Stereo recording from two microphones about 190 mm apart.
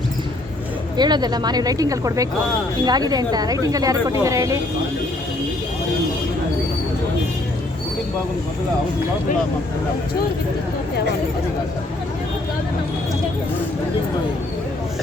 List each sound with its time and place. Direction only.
0.9 s speech: 20° right (ahead or behind)